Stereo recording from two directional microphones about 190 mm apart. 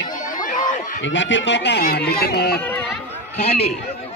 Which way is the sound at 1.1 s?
75° left (ahead or behind).